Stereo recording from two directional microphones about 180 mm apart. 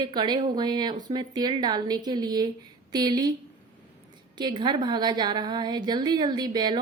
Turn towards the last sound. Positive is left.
turn(degrees=-25)  # may be behind; listen again after turning